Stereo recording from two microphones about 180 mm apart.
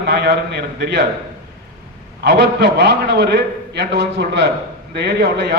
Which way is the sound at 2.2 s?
70° right (ahead or behind).